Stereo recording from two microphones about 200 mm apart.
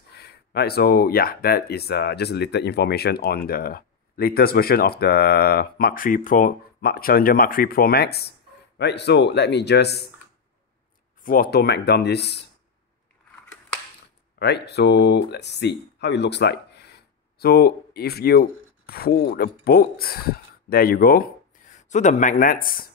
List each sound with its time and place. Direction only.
0.1 s speech: 55° left (ahead or behind)
11.2 s speech: 45° left (ahead or behind)
14.4 s speech: 55° left (ahead or behind)